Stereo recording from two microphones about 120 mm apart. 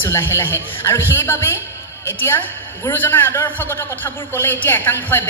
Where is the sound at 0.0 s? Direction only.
20° left (ahead or behind).